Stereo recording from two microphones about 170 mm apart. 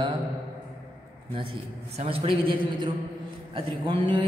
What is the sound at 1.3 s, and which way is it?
A man's voice, 35° right (ahead or behind).